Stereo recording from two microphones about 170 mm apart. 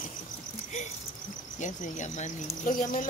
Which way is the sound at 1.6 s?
45° left (ahead or behind).